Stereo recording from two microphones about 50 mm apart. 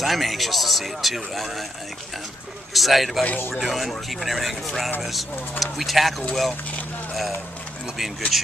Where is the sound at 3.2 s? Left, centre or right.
Left.